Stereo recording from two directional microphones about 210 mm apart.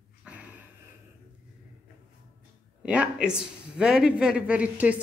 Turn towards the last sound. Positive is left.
turn(degrees=-5)  # may be behind; listen again after turning